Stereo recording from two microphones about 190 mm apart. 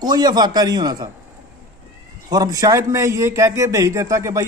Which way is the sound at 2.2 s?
20° right (ahead or behind).